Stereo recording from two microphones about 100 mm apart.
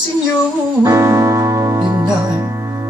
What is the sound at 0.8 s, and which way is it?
Music, 30° right (ahead or behind).